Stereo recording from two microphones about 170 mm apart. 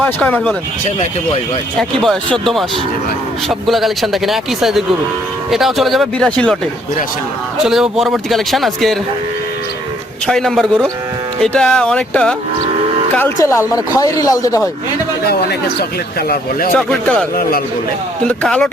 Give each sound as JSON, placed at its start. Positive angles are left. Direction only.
{"t": 0.0, "sound": "speech", "side_deg": 10}
{"t": 1.8, "sound": "speech", "side_deg": 5}
{"t": 3.7, "sound": "speech", "side_deg": 0}
{"t": 7.6, "sound": "speech", "side_deg": 0}
{"t": 10.2, "sound": "speech", "side_deg": 0}
{"t": 16.7, "sound": "speech", "side_deg": 5}
{"t": 18.3, "sound": "speech", "side_deg": 5}